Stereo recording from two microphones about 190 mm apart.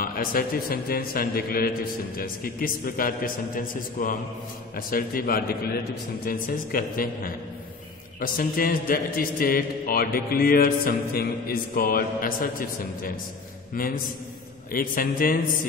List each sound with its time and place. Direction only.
0.0 s a man's voice: 50° left (ahead or behind)